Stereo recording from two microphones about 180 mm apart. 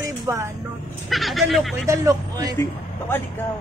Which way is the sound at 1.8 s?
15° right (ahead or behind).